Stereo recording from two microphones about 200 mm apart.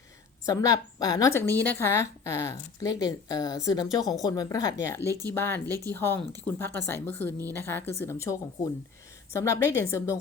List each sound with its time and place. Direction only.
0.4 s a woman's voice: 15° left (ahead or behind)